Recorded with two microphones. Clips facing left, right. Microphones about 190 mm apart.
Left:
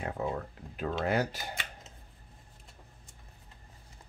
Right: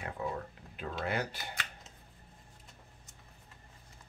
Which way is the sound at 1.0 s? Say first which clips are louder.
Left 5 dB; 45° left (ahead or behind).